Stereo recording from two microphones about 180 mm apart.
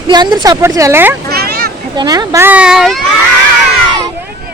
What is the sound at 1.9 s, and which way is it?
A woman's voice, 20° right (ahead or behind).